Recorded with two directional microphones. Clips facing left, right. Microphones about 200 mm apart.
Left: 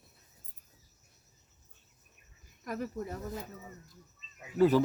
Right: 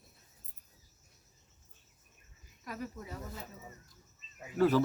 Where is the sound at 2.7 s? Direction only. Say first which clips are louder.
Left 6 dB; 50° left (ahead or behind).